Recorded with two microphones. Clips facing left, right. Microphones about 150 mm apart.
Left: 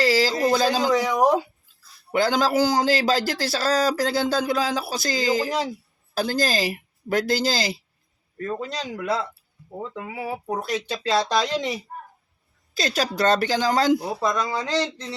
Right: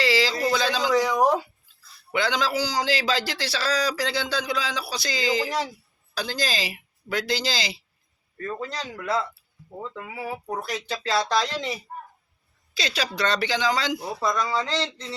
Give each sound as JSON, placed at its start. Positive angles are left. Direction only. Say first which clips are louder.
{"t": 0.0, "sound": "a sound", "louder": "left 3 dB", "side_deg": 45}
{"t": 0.9, "sound": "speech", "louder": "right 2 dB", "side_deg": 15}
{"t": 2.1, "sound": "a man's voice", "louder": "left 5 dB", "side_deg": 45}
{"t": 8.4, "sound": "speech", "louder": "left 3 dB", "side_deg": 20}
{"t": 12.7, "sound": "a man's voice", "louder": "left 4 dB", "side_deg": 50}
{"t": 14.1, "sound": "speech", "louder": "left 1 dB", "side_deg": 15}